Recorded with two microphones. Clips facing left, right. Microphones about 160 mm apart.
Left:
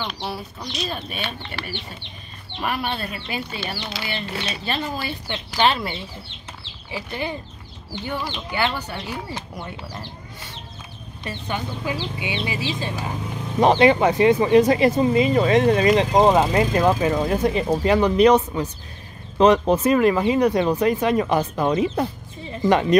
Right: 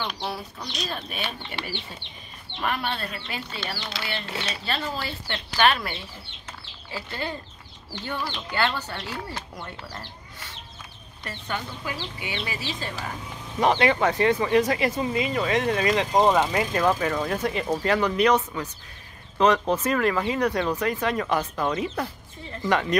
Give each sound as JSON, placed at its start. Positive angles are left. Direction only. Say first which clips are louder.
{"t": 0.0, "sound": "speech", "louder": "left 2 dB", "side_deg": 5}
{"t": 1.5, "sound": "speech", "louder": "left 1 dB", "side_deg": -20}
{"t": 2.6, "sound": "speech", "louder": "left 2 dB", "side_deg": 10}
{"t": 11.2, "sound": "speech", "louder": "left 4 dB", "side_deg": 15}